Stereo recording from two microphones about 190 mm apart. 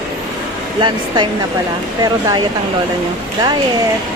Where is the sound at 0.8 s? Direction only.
25° right (ahead or behind).